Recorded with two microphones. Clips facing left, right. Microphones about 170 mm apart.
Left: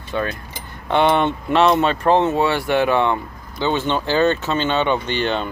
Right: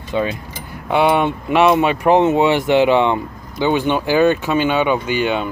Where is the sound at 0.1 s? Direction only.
15° right (ahead or behind).